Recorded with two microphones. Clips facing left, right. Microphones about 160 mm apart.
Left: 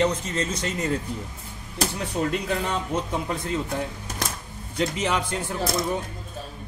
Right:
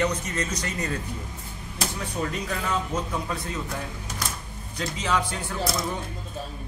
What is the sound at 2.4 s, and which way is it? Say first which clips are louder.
Speech: left 2 dB; 25° left (ahead or behind).